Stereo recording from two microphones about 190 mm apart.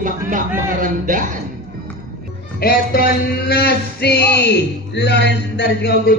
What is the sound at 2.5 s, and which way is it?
Music, 55° left (ahead or behind).